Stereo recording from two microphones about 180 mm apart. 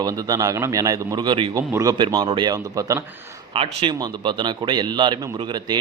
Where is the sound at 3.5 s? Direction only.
30° right (ahead or behind).